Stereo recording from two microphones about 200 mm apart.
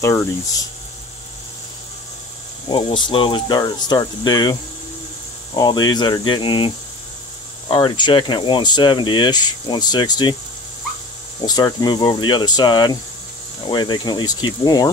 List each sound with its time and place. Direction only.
2.7 s speech: 25° left (ahead or behind)
11.4 s speech: 20° left (ahead or behind)